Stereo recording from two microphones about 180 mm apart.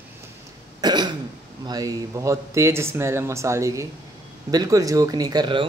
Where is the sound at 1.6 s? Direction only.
20° right (ahead or behind).